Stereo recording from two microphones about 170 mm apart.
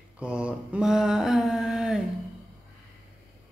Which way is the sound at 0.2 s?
5° right (ahead or behind).